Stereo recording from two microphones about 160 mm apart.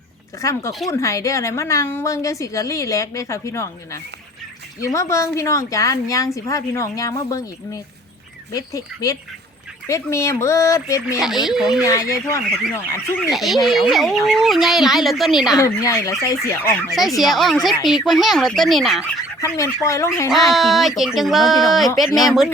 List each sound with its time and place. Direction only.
0.4 s a woman's voice: 20° left (ahead or behind)
11.4 s speech: 5° right (ahead or behind)
11.8 s a woman's voice: 20° left (ahead or behind)
13.3 s speech: centre (ahead or behind)
15.5 s a woman's voice: 20° left (ahead or behind)
17.2 s speech: centre (ahead or behind)
19.4 s a woman's voice: 20° left (ahead or behind)
20.5 s speech: centre (ahead or behind)